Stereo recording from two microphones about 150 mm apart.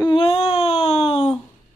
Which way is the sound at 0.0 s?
35° left (ahead or behind).